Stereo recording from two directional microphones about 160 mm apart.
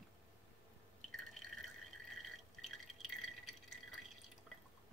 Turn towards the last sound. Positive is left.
turn(degrees=0)  # may be behind; listen again after turning